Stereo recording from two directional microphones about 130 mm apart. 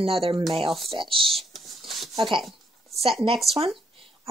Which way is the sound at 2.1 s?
40° right (ahead or behind).